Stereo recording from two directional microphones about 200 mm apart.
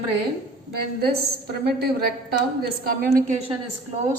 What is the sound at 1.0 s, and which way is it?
A woman's voice, 55° right (ahead or behind).